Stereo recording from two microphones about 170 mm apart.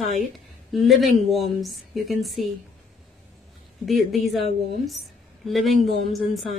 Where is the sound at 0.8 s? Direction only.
Centre (ahead or behind).